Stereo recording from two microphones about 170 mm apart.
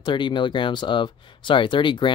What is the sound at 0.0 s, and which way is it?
Speech, 30° left (ahead or behind).